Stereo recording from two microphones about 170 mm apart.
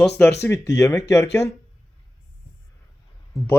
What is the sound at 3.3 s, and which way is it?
Speech, centre (ahead or behind).